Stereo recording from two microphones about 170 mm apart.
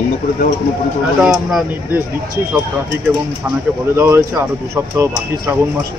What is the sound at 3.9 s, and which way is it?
Speech, 15° right (ahead or behind).